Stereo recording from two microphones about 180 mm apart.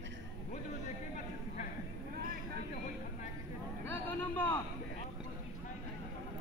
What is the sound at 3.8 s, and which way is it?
Vehicle, 10° left (ahead or behind).